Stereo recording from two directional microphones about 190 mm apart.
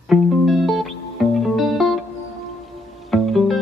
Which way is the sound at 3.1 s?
Centre (ahead or behind).